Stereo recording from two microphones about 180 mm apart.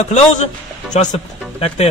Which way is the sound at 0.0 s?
40° left (ahead or behind).